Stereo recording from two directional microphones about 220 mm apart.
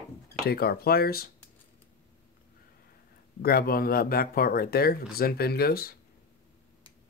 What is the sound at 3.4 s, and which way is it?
Speech, 45° left (ahead or behind).